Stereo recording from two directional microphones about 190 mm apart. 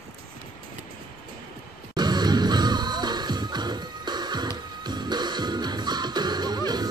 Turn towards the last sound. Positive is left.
turn(degrees=-20)  # may be behind; listen again after turning